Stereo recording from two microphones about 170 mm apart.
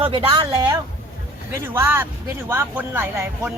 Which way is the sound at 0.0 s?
30° right (ahead or behind).